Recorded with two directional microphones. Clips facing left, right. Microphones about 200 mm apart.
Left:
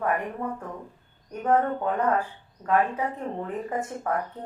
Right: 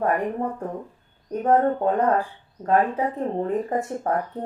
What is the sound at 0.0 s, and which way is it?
Speech, 35° right (ahead or behind).